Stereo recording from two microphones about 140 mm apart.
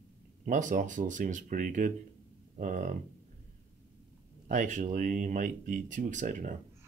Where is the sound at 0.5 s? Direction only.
65° right (ahead or behind).